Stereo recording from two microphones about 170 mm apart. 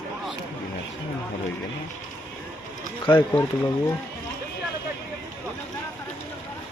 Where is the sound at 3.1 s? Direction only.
30° left (ahead or behind).